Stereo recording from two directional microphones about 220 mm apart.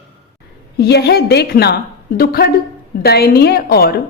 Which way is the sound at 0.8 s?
50° left (ahead or behind).